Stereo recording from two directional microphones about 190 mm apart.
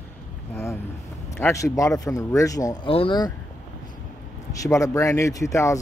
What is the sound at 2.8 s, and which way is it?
Speech, 30° left (ahead or behind).